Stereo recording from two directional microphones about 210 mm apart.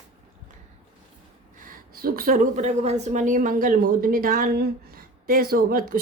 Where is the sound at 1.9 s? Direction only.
45° right (ahead or behind).